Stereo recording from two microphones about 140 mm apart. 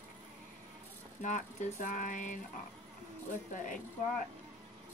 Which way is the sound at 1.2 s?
65° left (ahead or behind).